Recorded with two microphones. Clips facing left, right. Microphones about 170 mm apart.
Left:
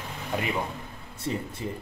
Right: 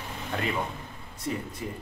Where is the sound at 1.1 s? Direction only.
30° left (ahead or behind).